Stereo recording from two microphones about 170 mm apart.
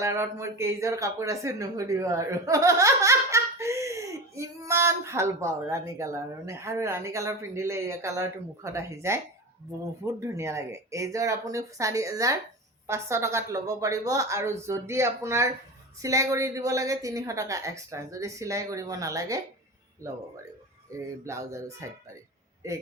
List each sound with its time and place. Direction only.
0.0 s a woman's voice: 15° right (ahead or behind)